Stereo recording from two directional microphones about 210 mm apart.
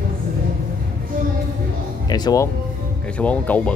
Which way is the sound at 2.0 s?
20° left (ahead or behind).